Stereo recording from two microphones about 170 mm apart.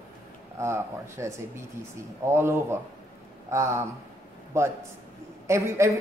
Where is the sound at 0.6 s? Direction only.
15° right (ahead or behind).